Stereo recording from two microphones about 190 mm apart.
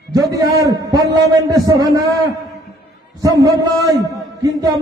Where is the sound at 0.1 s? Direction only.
20° right (ahead or behind).